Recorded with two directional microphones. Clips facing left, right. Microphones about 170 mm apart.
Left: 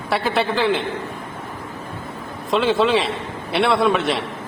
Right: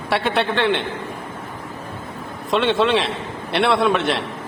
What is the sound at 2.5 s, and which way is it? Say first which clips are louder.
A man's voice: even; centre (ahead or behind).